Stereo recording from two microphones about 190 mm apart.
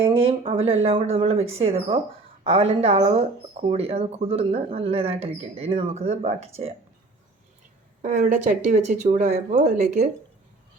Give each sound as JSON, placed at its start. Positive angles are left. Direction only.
{"t": 0.3, "sound": "speech", "side_deg": -30}
{"t": 8.0, "sound": "speech", "side_deg": -40}